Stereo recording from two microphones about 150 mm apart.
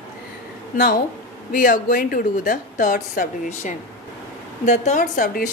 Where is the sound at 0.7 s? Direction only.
60° left (ahead or behind).